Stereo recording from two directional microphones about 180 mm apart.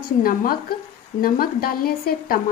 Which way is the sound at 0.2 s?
55° left (ahead or behind).